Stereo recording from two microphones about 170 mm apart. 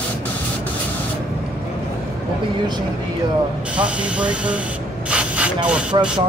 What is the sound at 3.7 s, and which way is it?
Speech, 5° right (ahead or behind).